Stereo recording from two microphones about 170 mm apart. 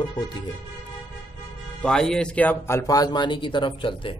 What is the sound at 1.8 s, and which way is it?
Speech, 5° left (ahead or behind).